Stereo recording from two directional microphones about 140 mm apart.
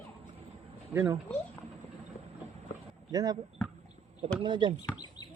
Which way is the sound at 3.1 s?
30° right (ahead or behind).